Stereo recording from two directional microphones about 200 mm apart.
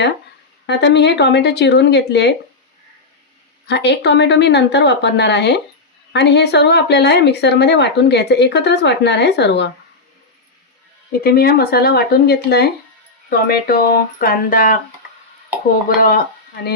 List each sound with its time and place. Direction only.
0.7 s speech: 60° left (ahead or behind)
3.7 s speech: 60° left (ahead or behind)
11.2 s speech: 50° left (ahead or behind)
16.0 s speech: 45° left (ahead or behind)